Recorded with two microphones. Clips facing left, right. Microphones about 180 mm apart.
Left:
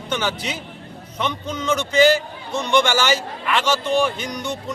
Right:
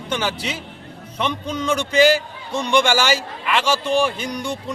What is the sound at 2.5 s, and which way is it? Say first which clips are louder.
A man's voice: right 1 dB; 15° right (ahead or behind).